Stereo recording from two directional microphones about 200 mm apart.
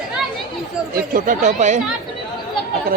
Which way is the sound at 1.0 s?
40° right (ahead or behind).